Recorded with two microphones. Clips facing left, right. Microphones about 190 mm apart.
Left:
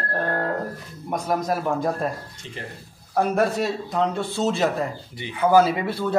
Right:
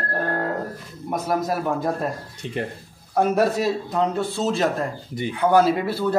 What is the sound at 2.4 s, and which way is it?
Speech, 55° right (ahead or behind).